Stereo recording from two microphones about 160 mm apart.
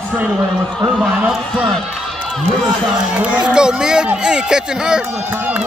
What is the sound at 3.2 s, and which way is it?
A man's voice, 5° right (ahead or behind).